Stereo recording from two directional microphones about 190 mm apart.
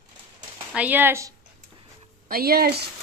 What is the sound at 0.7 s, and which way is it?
Speech, 10° right (ahead or behind).